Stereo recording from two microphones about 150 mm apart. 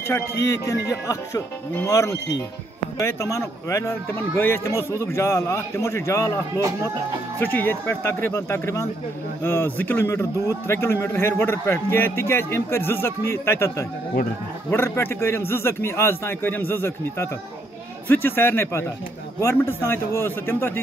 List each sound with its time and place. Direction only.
0.4 s a man's voice: 20° left (ahead or behind)